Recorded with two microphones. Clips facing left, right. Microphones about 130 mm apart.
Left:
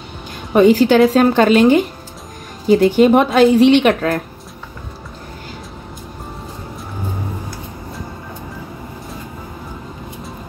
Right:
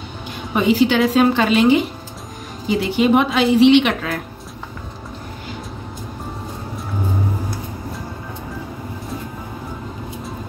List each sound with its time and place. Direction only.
0.6 s a woman's voice: 45° left (ahead or behind)